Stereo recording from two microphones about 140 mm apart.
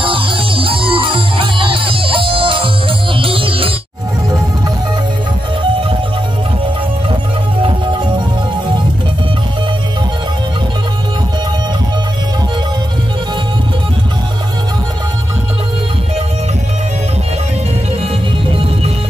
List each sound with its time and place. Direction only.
0.0 s music: 40° right (ahead or behind)